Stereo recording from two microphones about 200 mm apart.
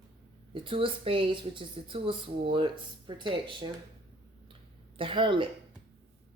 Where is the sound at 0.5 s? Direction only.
25° right (ahead or behind).